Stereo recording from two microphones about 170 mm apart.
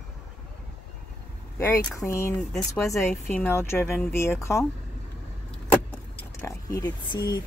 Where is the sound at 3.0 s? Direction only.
15° left (ahead or behind).